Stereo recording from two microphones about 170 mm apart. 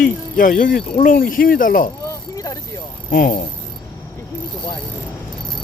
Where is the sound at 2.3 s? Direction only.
20° left (ahead or behind).